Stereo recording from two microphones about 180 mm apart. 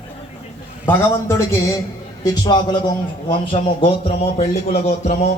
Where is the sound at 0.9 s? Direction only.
10° left (ahead or behind).